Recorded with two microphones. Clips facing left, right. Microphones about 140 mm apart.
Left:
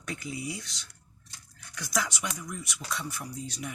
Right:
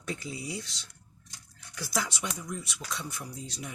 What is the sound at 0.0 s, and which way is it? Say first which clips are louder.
Speech: left 1 dB; 25° right (ahead or behind).